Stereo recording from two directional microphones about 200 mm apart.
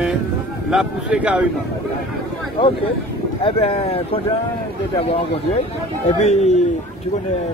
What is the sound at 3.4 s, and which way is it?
Speech, 30° left (ahead or behind).